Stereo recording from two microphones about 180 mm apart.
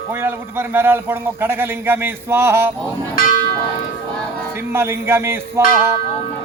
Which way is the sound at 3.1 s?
50° left (ahead or behind).